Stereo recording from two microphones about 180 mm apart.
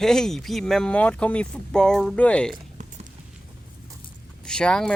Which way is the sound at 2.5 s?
40° right (ahead or behind).